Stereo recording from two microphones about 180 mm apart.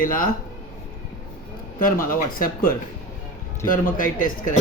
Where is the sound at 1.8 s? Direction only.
50° left (ahead or behind).